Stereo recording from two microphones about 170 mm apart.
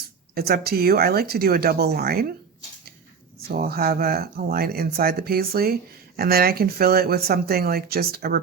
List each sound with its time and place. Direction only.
0.3 s speech: 65° right (ahead or behind)
3.5 s speech: 65° right (ahead or behind)